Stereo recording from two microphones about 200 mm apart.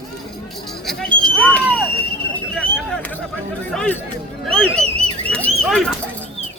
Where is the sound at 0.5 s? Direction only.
Centre (ahead or behind).